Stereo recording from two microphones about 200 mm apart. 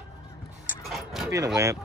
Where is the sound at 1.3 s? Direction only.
15° right (ahead or behind).